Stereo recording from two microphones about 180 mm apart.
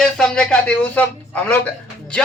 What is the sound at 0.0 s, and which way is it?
A man's voice, centre (ahead or behind).